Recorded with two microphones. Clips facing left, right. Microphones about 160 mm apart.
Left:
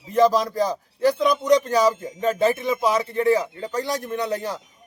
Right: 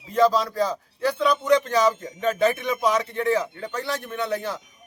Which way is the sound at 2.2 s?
35° left (ahead or behind).